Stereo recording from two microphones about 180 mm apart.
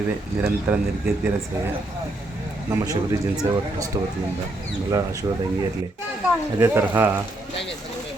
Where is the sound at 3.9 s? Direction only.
20° right (ahead or behind).